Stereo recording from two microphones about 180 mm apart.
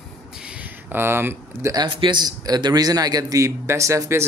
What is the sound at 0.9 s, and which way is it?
Speech, 10° right (ahead or behind).